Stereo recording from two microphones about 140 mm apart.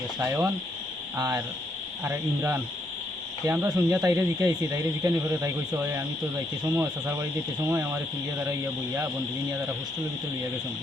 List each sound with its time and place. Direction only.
0.2 s speech: 20° right (ahead or behind)